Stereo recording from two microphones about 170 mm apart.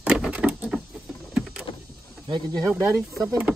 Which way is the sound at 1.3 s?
5° right (ahead or behind).